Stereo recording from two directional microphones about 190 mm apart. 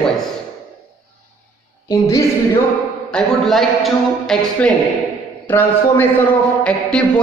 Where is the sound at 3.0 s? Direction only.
5° left (ahead or behind).